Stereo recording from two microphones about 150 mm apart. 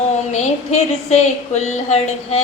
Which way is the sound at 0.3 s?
50° left (ahead or behind).